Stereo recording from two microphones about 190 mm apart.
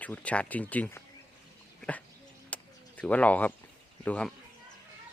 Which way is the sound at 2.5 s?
5° left (ahead or behind).